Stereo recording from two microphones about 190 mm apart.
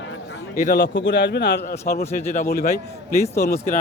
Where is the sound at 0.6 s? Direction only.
55° left (ahead or behind).